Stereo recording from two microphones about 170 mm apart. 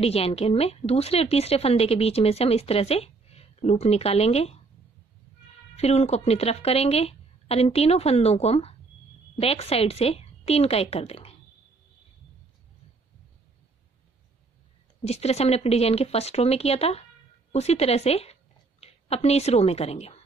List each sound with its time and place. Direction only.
0.0 s a woman's voice: 35° left (ahead or behind)
5.8 s a woman's voice: 40° left (ahead or behind)
15.0 s a woman's voice: 40° left (ahead or behind)